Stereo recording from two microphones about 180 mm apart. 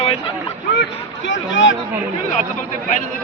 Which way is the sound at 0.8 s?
90° left.